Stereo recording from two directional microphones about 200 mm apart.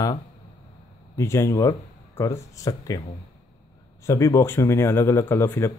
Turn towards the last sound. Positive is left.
turn(degrees=10)  # may be behind; listen again after turning